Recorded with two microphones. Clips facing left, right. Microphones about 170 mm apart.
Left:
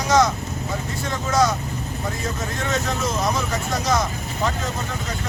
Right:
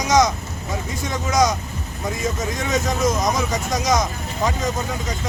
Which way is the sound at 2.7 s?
15° right (ahead or behind).